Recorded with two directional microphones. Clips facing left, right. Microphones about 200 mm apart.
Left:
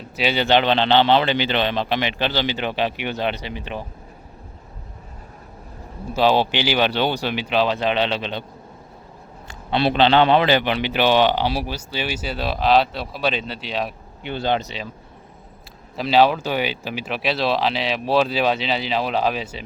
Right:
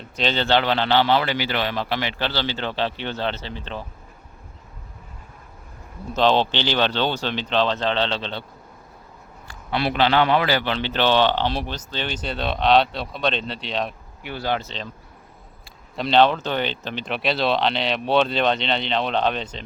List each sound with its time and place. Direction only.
0.0 s a man's voice: 10° left (ahead or behind)
6.1 s a man's voice: 10° left (ahead or behind)
9.5 s a man's voice: 25° left (ahead or behind); by 13.9 s 5° left (ahead or behind)
14.2 s speech: 25° left (ahead or behind)
16.0 s speech: 5° left (ahead or behind)